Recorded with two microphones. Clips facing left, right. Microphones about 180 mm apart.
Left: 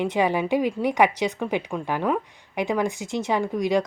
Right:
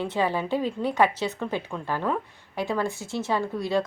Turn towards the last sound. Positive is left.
turn(degrees=15)  # may be behind; listen again after turning